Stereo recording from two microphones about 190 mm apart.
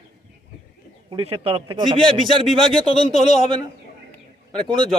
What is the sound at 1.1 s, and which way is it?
Speech, 30° right (ahead or behind).